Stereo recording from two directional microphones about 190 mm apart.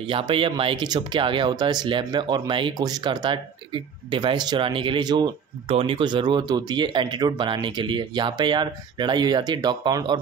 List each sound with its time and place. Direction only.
0.0 s speech: 25° right (ahead or behind)